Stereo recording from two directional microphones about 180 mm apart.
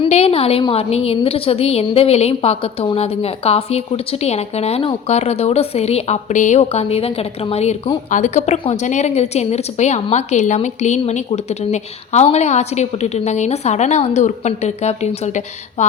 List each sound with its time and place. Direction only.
0.0 s a woman's voice: 35° left (ahead or behind)